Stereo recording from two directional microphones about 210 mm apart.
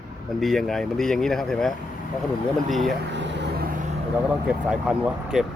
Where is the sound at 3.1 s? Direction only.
55° right (ahead or behind).